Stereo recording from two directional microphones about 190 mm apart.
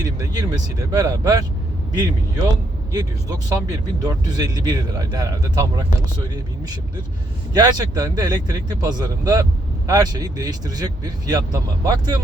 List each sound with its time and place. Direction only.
0.0 s speech: 20° right (ahead or behind)
2.9 s speech: 20° right (ahead or behind)
7.5 s speech: 20° right (ahead or behind)